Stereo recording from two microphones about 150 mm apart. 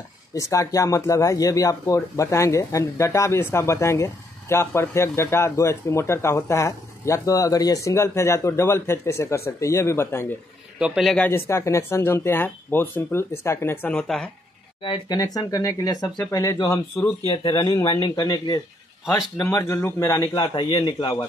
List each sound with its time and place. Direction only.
0.3 s speech: 20° left (ahead or behind)
10.8 s a man's voice: centre (ahead or behind)
11.2 s speech: 15° left (ahead or behind)
14.8 s speech: 30° left (ahead or behind)